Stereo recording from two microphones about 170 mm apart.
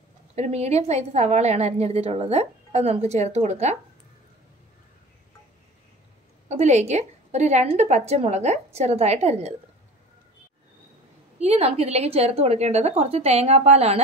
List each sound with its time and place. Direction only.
0.4 s a woman's voice: 40° right (ahead or behind)
6.5 s a woman's voice: 40° right (ahead or behind)
11.3 s a woman's voice: 40° right (ahead or behind)